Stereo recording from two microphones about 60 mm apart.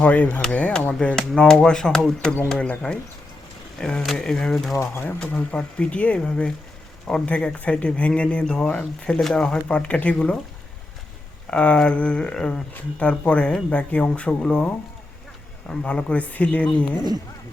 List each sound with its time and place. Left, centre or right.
0.0 s speech: left; by 4.8 s centre
5.2 s speech: centre
11.5 s speech: centre